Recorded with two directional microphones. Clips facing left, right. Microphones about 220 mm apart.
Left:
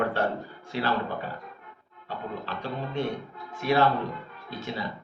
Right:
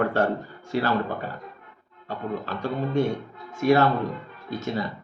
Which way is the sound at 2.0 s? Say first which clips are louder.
Right 5 dB; 45° right (ahead or behind).